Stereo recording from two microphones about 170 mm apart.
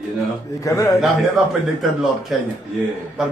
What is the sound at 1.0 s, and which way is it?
A man's voice, centre (ahead or behind).